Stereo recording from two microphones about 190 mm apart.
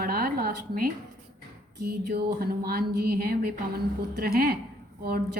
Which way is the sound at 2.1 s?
55° right (ahead or behind).